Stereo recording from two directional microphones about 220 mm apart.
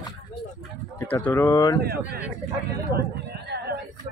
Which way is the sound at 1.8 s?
45° right (ahead or behind).